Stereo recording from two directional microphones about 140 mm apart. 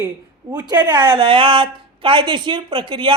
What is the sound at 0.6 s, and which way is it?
A woman's voice, 30° right (ahead or behind).